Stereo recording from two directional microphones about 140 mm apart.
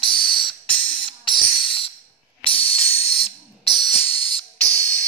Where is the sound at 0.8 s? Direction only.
35° left (ahead or behind).